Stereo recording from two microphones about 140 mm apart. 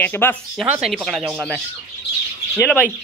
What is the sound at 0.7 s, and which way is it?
Speech, 5° right (ahead or behind).